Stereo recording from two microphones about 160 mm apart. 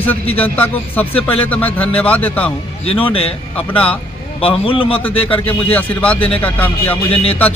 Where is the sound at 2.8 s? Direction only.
35° left (ahead or behind).